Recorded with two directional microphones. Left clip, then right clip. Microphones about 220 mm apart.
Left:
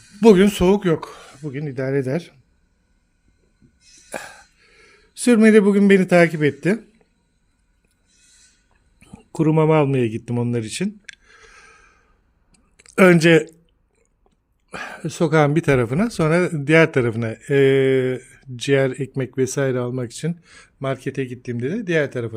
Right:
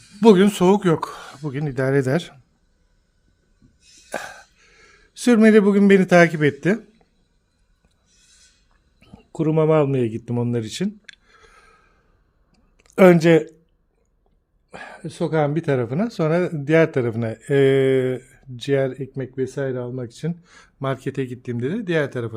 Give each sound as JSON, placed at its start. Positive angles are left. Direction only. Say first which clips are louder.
{"t": 0.2, "sound": "speech", "louder": "left 1 dB", "side_deg": 0}
{"t": 4.1, "sound": "a sound", "louder": "right 2 dB", "side_deg": -5}
{"t": 9.0, "sound": "a sound", "louder": "left 3 dB", "side_deg": 15}
{"t": 12.8, "sound": "speech", "louder": "even", "side_deg": 5}
{"t": 14.7, "sound": "speech", "louder": "left 5 dB", "side_deg": 25}
{"t": 20.4, "sound": "speech", "louder": "even", "side_deg": -5}